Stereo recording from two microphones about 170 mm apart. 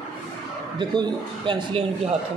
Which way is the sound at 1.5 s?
30° right (ahead or behind).